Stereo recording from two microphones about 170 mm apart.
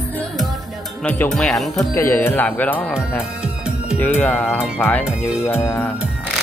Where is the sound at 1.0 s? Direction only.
5° left (ahead or behind).